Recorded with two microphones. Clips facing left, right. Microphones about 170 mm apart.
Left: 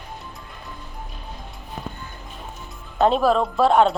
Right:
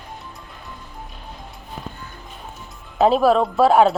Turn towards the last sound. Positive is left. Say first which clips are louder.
# right 2 dB
turn(degrees=-5)  # may be behind; listen again after turning